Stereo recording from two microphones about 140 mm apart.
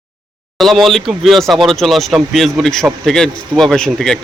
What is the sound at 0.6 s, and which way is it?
Speech, centre (ahead or behind).